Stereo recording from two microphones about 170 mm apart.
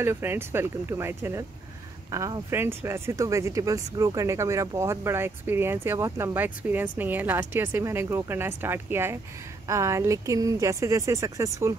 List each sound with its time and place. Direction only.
0.0 s speech: 15° right (ahead or behind)